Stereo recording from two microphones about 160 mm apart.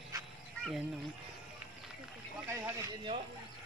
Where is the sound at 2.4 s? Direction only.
15° right (ahead or behind).